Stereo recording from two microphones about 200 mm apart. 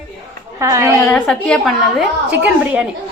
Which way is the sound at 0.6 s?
15° right (ahead or behind).